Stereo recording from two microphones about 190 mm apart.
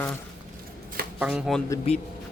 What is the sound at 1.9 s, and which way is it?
Speech, 30° left (ahead or behind).